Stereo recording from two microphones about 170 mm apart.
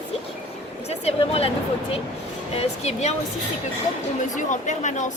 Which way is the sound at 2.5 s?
40° left (ahead or behind).